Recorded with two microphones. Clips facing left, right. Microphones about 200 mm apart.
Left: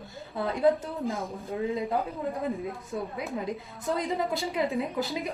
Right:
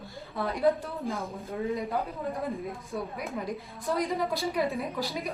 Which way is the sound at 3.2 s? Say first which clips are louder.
Left 2 dB; 25° left (ahead or behind).